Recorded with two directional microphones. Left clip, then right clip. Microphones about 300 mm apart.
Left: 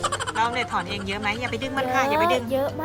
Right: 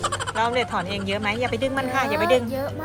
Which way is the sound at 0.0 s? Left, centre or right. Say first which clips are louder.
Even; centre.